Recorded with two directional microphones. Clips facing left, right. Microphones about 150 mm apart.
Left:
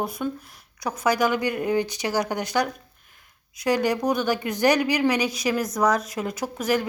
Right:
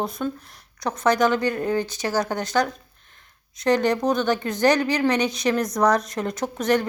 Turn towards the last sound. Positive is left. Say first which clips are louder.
# right 3 dB
turn(degrees=10)  # may be behind; listen again after turning